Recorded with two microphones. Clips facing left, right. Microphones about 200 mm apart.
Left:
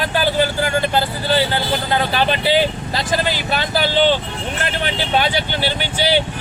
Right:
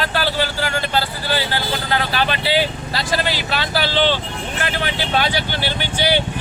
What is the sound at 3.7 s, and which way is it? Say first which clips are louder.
Speech: left 3 dB; 15° left (ahead or behind).